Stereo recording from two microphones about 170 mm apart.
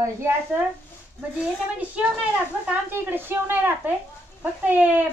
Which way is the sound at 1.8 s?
10° right (ahead or behind).